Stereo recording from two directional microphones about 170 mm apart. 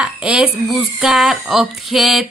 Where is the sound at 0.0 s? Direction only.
5° right (ahead or behind).